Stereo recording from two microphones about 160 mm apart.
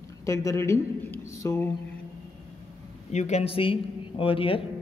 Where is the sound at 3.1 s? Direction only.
45° left (ahead or behind).